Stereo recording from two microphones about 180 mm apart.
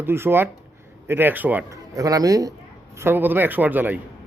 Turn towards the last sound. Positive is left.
turn(degrees=-10)  # may be behind; listen again after turning